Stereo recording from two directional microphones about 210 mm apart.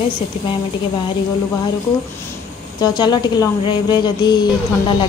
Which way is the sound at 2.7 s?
20° left (ahead or behind).